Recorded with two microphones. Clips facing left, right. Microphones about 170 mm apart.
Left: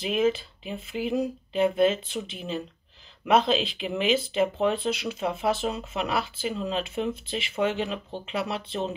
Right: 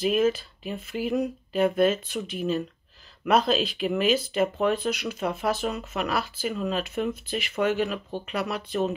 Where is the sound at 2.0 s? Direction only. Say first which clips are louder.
Right 4 dB; 25° left (ahead or behind).